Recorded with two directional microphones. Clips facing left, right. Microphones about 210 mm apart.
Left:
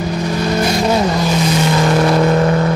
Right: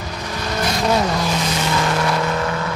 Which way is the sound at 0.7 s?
5° left (ahead or behind).